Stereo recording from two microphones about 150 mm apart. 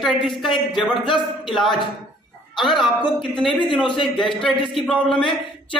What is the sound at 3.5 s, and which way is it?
Speech, 35° left (ahead or behind).